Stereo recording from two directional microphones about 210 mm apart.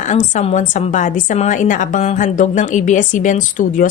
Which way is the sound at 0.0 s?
35° left (ahead or behind).